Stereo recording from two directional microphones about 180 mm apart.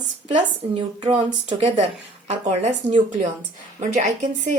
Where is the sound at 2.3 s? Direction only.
40° right (ahead or behind).